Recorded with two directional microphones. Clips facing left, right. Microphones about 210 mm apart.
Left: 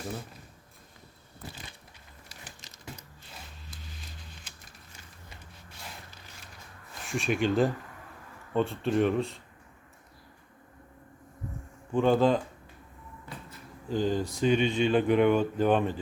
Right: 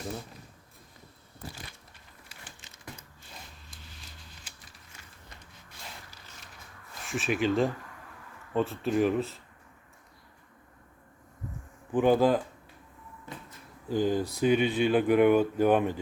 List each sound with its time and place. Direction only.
2.3 s a sound: 40° left (ahead or behind)
7.0 s speech: centre (ahead or behind)
11.9 s speech: 15° right (ahead or behind)
13.9 s speech: 10° right (ahead or behind)